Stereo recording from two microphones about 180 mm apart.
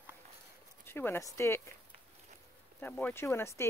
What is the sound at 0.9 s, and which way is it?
Speech, 15° left (ahead or behind).